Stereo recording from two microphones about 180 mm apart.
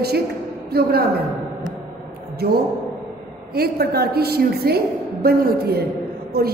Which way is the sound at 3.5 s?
60° right (ahead or behind).